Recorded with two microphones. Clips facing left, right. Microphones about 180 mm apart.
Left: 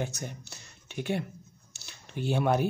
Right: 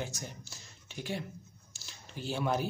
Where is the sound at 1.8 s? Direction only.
60° left (ahead or behind).